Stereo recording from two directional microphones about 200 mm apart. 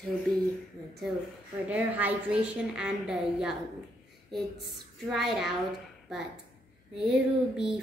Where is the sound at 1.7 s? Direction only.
5° right (ahead or behind).